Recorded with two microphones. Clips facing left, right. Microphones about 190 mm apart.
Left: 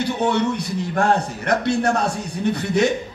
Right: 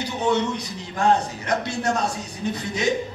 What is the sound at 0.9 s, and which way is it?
A man's voice, 60° left (ahead or behind).